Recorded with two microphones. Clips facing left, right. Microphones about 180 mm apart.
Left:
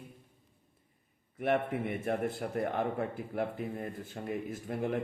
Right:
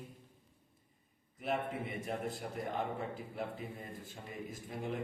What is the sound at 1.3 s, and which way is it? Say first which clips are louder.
A man's voice: left 6 dB; 65° left (ahead or behind).